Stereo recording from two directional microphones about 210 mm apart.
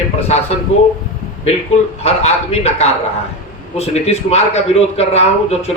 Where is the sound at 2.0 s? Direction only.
30° left (ahead or behind).